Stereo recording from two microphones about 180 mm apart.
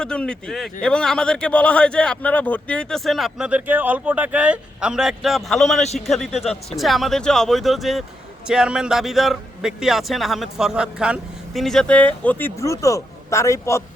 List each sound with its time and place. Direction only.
0.0 s a man's voice: 5° left (ahead or behind)
5.8 s a man's voice: 35° left (ahead or behind)
6.1 s a man's voice: centre (ahead or behind)